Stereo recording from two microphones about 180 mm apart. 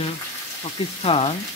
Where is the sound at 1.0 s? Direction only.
30° left (ahead or behind).